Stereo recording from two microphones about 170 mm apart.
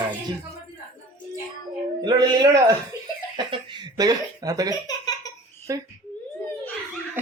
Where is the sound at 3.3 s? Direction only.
25° right (ahead or behind).